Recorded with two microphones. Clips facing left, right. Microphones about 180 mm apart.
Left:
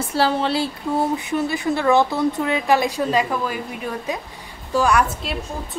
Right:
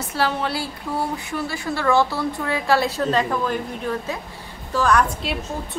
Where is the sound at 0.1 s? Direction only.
30° left (ahead or behind); by 5.0 s 10° left (ahead or behind).